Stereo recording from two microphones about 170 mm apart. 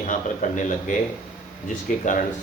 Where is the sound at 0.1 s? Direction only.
50° left (ahead or behind).